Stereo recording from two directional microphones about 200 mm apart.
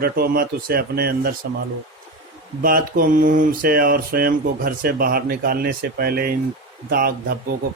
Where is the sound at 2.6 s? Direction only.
45° right (ahead or behind).